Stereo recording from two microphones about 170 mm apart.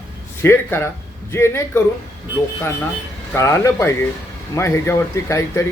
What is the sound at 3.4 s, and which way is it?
Speech, 15° left (ahead or behind).